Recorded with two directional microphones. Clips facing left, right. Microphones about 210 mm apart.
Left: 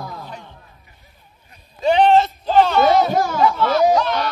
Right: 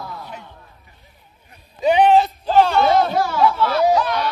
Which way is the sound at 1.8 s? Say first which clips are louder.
Even; 10° right (ahead or behind).